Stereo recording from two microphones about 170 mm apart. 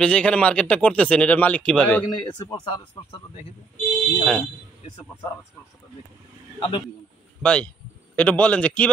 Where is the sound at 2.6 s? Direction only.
35° left (ahead or behind).